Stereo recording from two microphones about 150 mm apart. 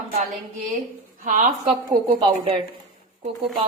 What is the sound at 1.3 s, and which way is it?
Speech, 60° right (ahead or behind).